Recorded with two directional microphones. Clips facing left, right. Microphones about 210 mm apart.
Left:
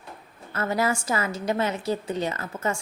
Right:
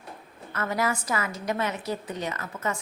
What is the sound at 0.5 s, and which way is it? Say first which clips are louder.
A woman's voice: left 3 dB; 30° left (ahead or behind).